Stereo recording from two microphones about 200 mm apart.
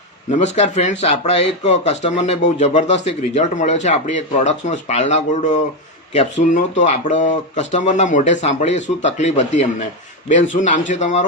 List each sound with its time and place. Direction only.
0.3 s speech: 35° left (ahead or behind)